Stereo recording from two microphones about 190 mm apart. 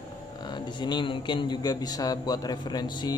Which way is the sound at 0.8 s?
25° left (ahead or behind).